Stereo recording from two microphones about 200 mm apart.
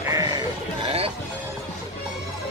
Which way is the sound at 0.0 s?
15° right (ahead or behind).